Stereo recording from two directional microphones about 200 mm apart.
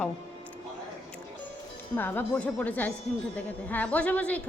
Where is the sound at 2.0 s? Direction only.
10° left (ahead or behind).